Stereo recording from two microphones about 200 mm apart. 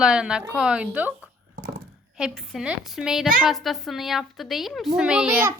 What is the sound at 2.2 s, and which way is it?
A woman's voice, centre (ahead or behind).